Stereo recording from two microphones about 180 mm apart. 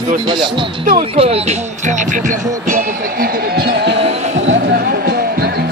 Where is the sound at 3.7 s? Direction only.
70° right (ahead or behind).